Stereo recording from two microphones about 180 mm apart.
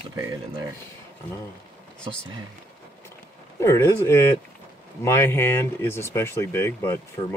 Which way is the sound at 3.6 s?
15° left (ahead or behind).